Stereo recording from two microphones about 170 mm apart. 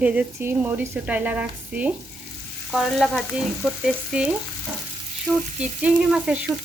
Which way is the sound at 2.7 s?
Centre (ahead or behind).